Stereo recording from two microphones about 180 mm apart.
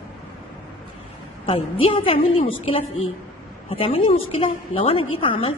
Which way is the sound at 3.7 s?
30° left (ahead or behind).